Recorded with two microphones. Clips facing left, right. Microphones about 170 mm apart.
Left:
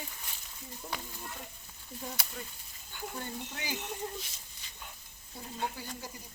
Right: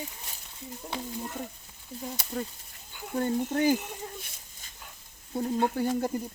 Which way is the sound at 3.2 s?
50° right (ahead or behind).